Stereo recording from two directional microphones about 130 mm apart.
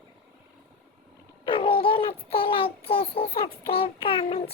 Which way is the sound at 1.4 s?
40° left (ahead or behind).